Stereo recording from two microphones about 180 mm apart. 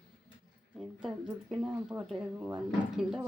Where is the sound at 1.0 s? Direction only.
5° right (ahead or behind).